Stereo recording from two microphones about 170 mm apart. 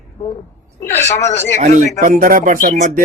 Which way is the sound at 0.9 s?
40° left (ahead or behind).